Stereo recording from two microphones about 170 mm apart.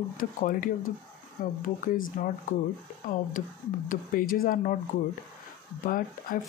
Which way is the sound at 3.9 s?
55° left (ahead or behind).